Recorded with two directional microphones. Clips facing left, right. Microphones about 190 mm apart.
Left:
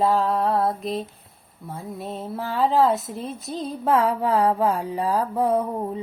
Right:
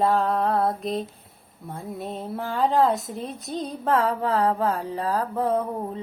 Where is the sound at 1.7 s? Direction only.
Centre (ahead or behind).